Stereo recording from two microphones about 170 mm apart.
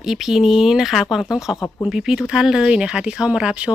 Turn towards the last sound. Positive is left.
turn(degrees=-5)  # may be behind; listen again after turning